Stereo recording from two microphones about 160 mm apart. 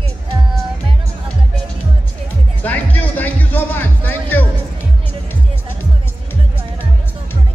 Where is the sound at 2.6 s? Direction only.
10° left (ahead or behind).